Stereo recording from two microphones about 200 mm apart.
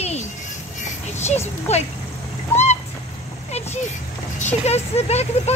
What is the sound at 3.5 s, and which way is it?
Vehicle, 35° left (ahead or behind).